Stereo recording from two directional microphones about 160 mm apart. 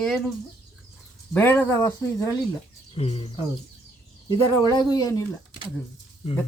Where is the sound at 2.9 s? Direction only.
40° left (ahead or behind).